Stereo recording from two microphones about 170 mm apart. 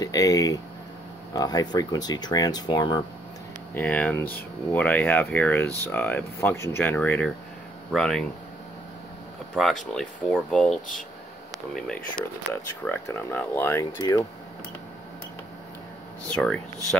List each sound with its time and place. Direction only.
0.0 s speech: 20° left (ahead or behind)
3.7 s speech: 10° left (ahead or behind)
9.6 s speech: centre (ahead or behind)
16.3 s speech: 5° left (ahead or behind)